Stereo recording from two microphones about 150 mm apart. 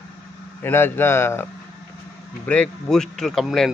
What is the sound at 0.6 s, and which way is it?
Speech, 15° left (ahead or behind).